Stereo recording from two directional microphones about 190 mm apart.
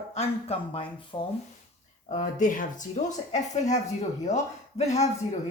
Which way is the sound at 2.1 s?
40° left (ahead or behind).